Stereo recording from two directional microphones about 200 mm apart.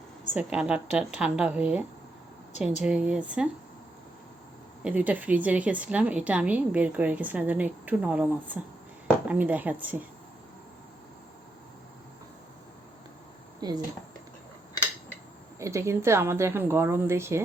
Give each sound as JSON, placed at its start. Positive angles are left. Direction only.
{"t": 0.3, "sound": "a woman's voice", "side_deg": -5}
{"t": 2.8, "sound": "a woman's voice", "side_deg": -5}
{"t": 4.8, "sound": "a woman's voice", "side_deg": -5}
{"t": 13.6, "sound": "speech", "side_deg": -20}
{"t": 15.5, "sound": "a woman's voice", "side_deg": -15}